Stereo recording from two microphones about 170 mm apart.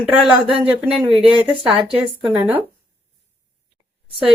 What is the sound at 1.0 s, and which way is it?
Speech, 35° right (ahead or behind).